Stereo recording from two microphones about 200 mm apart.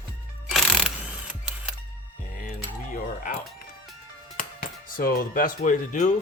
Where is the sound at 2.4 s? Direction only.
40° left (ahead or behind).